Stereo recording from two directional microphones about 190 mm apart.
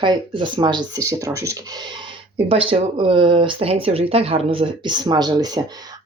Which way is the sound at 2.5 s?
30° right (ahead or behind).